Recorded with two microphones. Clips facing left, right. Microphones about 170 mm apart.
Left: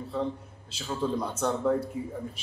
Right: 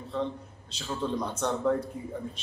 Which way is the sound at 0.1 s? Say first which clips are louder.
Even; 5° left (ahead or behind).